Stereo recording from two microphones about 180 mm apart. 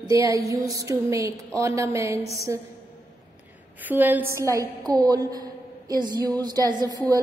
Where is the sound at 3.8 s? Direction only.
10° right (ahead or behind).